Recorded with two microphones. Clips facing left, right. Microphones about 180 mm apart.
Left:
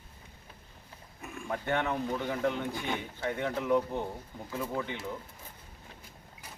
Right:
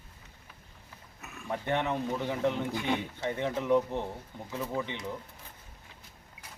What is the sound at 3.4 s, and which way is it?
Speech, 25° right (ahead or behind).